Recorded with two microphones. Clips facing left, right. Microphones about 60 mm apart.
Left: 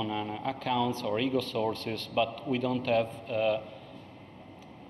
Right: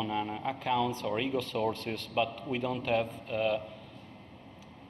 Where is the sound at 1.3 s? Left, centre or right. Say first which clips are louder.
Left 2 dB; right.